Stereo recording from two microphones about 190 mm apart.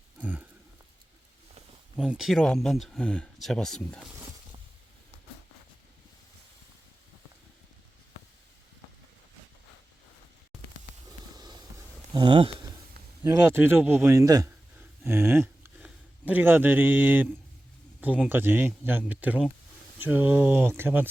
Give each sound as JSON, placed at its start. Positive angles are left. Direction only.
{"t": 0.2, "sound": "a sound", "side_deg": -5}
{"t": 2.0, "sound": "speech", "side_deg": -5}
{"t": 11.3, "sound": "train", "side_deg": -20}
{"t": 12.1, "sound": "a man's voice", "side_deg": -25}